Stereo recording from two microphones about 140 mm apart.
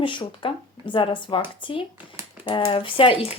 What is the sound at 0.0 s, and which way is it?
Speech, 35° left (ahead or behind).